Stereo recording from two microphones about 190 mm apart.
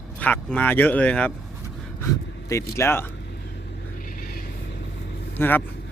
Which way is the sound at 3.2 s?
60° left (ahead or behind).